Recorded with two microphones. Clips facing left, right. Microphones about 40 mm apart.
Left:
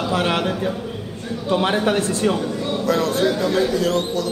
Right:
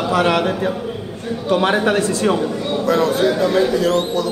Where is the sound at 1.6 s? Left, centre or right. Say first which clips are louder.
Right 3 dB; centre.